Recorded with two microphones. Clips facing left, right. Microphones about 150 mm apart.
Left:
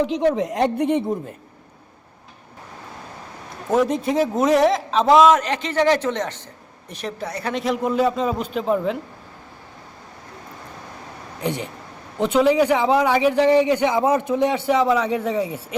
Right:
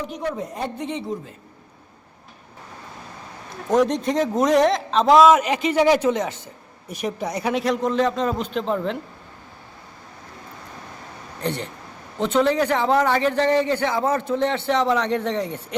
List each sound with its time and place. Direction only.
0.3 s speech: 85° left; by 1.1 s 55° left (ahead or behind)
3.7 s a man's voice: 5° left (ahead or behind); by 7.5 s 15° right (ahead or behind)
7.5 s a man's voice: centre (ahead or behind)
11.4 s a man's voice: 10° left (ahead or behind)